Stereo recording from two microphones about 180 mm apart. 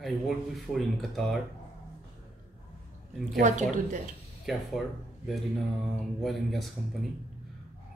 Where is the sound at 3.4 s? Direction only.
45° right (ahead or behind).